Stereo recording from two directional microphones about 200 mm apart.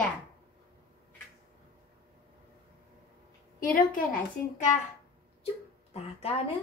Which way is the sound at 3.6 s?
45° left (ahead or behind).